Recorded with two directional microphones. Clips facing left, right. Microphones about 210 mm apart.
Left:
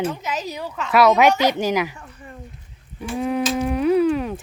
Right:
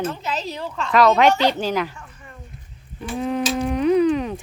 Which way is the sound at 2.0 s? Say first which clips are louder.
Left 3 dB; 35° left (ahead or behind).